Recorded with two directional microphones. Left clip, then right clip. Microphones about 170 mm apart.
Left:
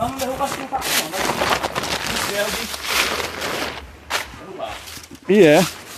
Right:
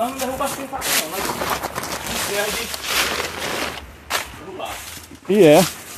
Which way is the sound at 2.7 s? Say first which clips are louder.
Left 1 dB; 15° left (ahead or behind).